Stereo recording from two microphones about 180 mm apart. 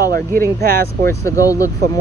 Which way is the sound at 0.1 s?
55° right (ahead or behind).